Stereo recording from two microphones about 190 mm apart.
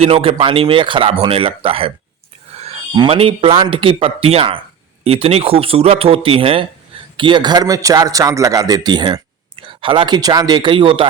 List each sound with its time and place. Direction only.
0.0 s a man's voice: 30° right (ahead or behind)
2.6 s a sound: 30° right (ahead or behind)
2.9 s a man's voice: 25° right (ahead or behind)